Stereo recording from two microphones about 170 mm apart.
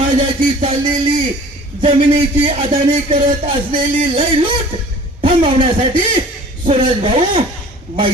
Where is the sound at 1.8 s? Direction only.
30° right (ahead or behind).